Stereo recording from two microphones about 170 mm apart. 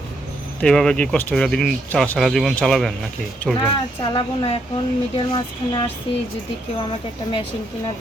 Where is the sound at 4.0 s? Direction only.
30° left (ahead or behind).